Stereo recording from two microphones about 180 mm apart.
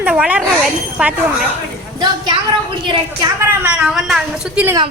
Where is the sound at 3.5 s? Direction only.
10° right (ahead or behind).